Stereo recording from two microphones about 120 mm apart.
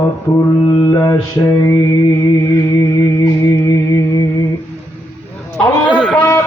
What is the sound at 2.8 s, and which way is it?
Music, 30° left (ahead or behind).